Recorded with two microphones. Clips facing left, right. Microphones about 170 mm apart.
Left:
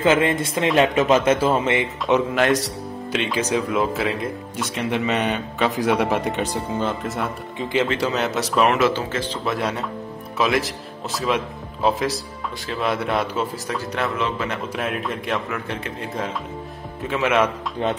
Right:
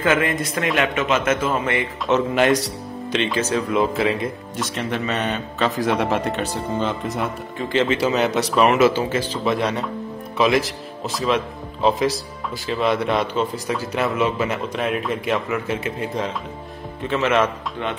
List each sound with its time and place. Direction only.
0.0 s a man's voice: 25° left (ahead or behind)
2.3 s a man's voice: centre (ahead or behind)
3.7 s speech: centre (ahead or behind)
4.7 s a man's voice: 15° left (ahead or behind)
7.9 s speech: 5° right (ahead or behind)
17.0 s a man's voice: 10° left (ahead or behind)